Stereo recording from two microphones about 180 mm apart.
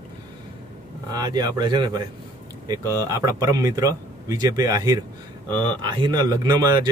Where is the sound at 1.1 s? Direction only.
20° right (ahead or behind).